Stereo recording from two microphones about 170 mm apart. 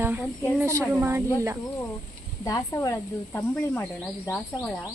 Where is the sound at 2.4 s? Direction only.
20° left (ahead or behind).